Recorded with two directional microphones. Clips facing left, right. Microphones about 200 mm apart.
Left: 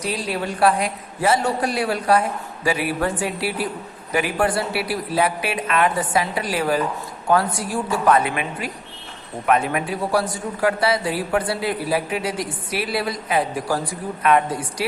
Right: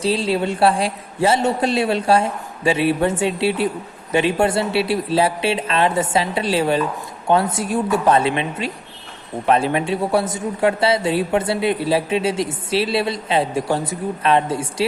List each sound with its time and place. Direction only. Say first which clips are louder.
0.0 s a man's voice: right 6 dB; 25° right (ahead or behind)